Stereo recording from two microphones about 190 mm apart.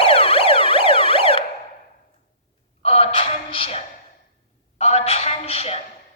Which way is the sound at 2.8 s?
30° left (ahead or behind).